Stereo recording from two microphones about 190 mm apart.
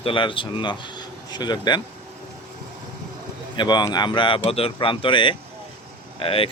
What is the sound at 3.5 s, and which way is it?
Speech, 20° left (ahead or behind).